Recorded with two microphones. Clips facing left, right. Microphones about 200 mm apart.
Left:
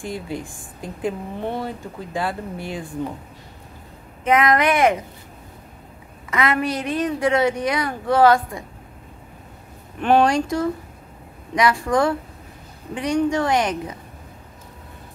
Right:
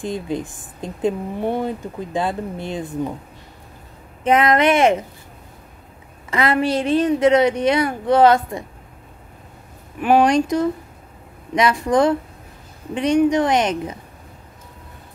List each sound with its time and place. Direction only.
0.0 s speech: 20° right (ahead or behind)
4.2 s speech: 30° right (ahead or behind)
6.3 s speech: 30° right (ahead or behind)
9.9 s speech: 5° right (ahead or behind)
10.2 s speech: 20° right (ahead or behind)